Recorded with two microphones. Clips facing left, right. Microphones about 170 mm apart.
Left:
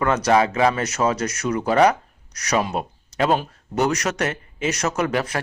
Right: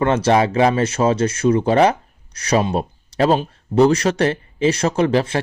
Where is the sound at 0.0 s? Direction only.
30° right (ahead or behind).